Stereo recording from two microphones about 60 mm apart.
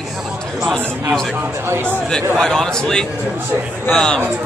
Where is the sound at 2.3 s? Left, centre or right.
Centre.